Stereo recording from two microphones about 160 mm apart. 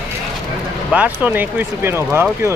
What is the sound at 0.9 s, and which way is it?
Speech, 10° right (ahead or behind).